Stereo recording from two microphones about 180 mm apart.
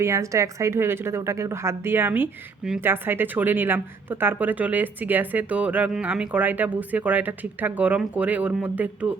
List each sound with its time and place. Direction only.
0.0 s a woman's voice: 15° right (ahead or behind)